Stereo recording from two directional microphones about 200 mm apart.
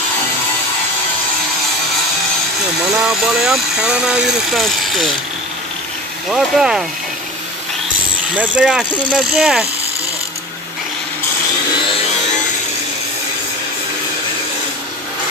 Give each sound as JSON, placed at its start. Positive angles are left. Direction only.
{"t": 3.0, "sound": "speech", "side_deg": -5}
{"t": 6.2, "sound": "speech", "side_deg": 0}
{"t": 8.4, "sound": "speech", "side_deg": -5}